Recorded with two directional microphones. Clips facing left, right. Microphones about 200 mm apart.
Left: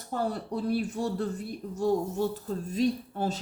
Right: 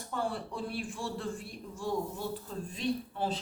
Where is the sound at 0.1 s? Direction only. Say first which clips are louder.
Left 5 dB; 40° left (ahead or behind).